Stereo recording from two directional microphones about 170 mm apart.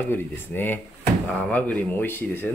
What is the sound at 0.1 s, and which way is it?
Speech, 10° left (ahead or behind).